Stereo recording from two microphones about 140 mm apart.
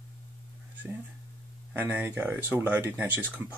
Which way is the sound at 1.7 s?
15° right (ahead or behind).